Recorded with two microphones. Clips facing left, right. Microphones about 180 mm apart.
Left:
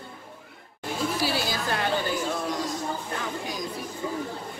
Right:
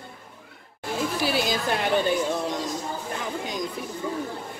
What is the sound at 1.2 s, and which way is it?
A woman's voice, 20° right (ahead or behind).